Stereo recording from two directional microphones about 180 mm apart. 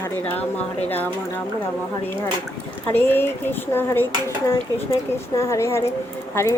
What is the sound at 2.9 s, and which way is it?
Speech, 10° left (ahead or behind).